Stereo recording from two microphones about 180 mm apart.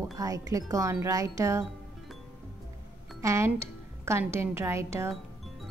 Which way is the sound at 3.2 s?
15° right (ahead or behind).